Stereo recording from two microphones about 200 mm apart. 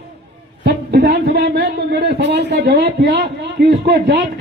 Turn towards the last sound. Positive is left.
turn(degrees=-55)  # may be behind; listen again after turning